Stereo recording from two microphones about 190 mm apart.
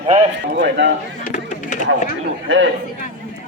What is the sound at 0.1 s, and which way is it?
Speech, 40° right (ahead or behind).